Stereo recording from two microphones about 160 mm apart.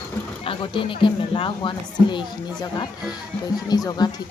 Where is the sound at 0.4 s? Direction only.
30° left (ahead or behind).